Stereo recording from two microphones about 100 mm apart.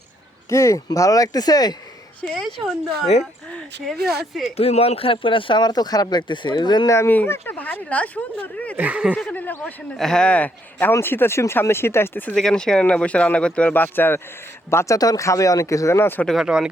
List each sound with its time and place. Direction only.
0.5 s speech: 30° left (ahead or behind)
2.2 s speech: 5° left (ahead or behind)
4.5 s speech: 90° left; by 6.8 s 45° left (ahead or behind)
6.8 s speech: 25° left (ahead or behind)
8.7 s speech: 15° right (ahead or behind)
9.1 s speech: 15° left (ahead or behind)
10.0 s speech: 5° left (ahead or behind)
12.4 s speech: 5° left (ahead or behind); by 14.9 s 25° left (ahead or behind)
14.9 s speech: 35° left (ahead or behind)
16.2 s speech: centre (ahead or behind)